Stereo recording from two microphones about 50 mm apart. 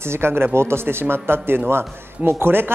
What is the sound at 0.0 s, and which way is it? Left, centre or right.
Speech, right.